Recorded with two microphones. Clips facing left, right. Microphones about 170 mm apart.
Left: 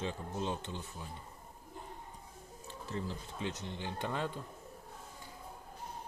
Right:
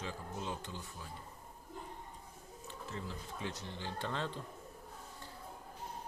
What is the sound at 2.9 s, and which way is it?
Speech, 35° left (ahead or behind).